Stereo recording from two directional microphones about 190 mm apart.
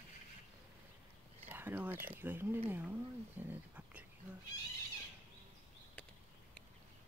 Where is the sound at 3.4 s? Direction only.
10° right (ahead or behind).